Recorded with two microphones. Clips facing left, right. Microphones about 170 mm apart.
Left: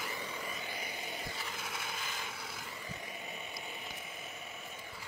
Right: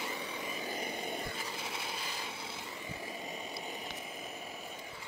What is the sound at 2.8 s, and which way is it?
Vehicle, 30° right (ahead or behind).